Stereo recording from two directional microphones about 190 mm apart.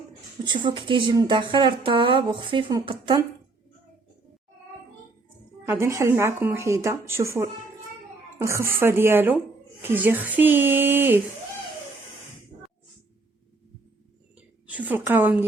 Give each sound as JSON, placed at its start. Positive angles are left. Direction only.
{"t": 0.4, "sound": "speech", "side_deg": -25}
{"t": 5.6, "sound": "a woman's voice", "side_deg": -15}
{"t": 14.3, "sound": "a sound", "side_deg": -5}